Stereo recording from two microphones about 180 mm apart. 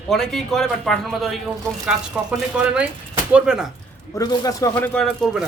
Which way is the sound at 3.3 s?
5° right (ahead or behind).